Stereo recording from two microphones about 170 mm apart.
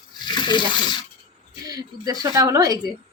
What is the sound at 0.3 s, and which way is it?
Speech, 25° left (ahead or behind).